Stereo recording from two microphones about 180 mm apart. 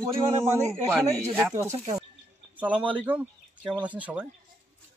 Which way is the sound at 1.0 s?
20° right (ahead or behind).